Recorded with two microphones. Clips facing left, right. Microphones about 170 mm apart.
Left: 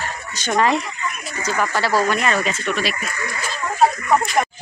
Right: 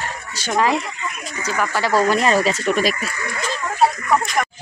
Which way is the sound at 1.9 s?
30° right (ahead or behind).